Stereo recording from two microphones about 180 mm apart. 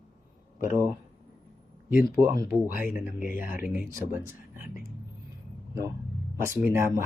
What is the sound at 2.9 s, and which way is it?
Speech, 5° right (ahead or behind).